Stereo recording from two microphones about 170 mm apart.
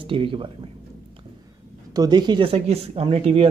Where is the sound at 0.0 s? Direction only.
30° right (ahead or behind).